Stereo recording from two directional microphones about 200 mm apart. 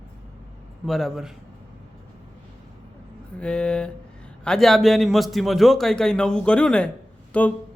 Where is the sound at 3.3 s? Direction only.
5° left (ahead or behind).